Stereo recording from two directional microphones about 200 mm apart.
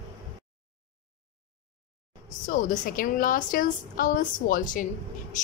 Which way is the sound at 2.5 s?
40° left (ahead or behind).